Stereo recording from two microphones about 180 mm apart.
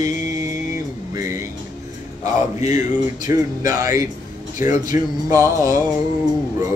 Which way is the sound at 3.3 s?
15° right (ahead or behind).